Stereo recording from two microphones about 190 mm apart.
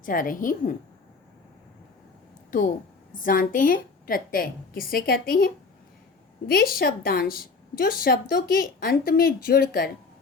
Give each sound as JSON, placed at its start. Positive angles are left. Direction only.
{"t": 0.0, "sound": "a woman's voice", "side_deg": 45}
{"t": 2.5, "sound": "a woman's voice", "side_deg": 45}
{"t": 6.5, "sound": "a woman's voice", "side_deg": 50}